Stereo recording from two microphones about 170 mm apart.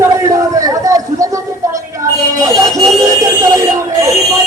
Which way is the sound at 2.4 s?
20° right (ahead or behind).